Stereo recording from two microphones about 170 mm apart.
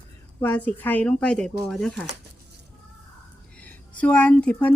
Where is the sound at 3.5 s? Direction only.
10° left (ahead or behind).